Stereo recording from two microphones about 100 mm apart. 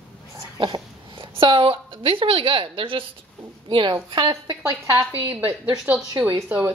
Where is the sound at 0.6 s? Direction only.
55° right (ahead or behind).